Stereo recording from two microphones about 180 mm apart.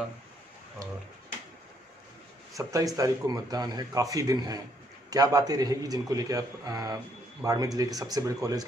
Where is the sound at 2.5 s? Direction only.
20° right (ahead or behind).